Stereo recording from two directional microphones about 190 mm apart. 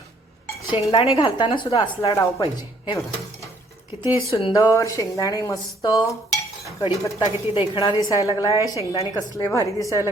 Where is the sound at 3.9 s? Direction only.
15° right (ahead or behind).